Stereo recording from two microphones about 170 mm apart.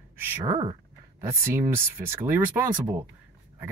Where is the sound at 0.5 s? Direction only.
25° right (ahead or behind).